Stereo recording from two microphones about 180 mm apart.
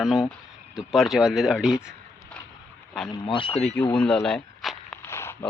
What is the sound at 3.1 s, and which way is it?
Speech, 25° left (ahead or behind).